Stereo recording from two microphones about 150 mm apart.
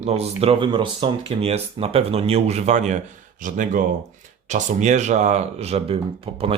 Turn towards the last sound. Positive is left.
turn(degrees=-40)  # may be behind; listen again after turning